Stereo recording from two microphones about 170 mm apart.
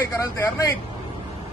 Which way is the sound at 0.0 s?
20° left (ahead or behind).